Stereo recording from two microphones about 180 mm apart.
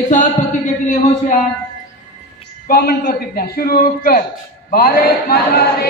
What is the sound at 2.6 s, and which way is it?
A man's voice, 55° left (ahead or behind).